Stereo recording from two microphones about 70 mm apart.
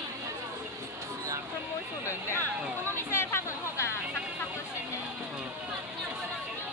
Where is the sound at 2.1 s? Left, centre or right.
Left.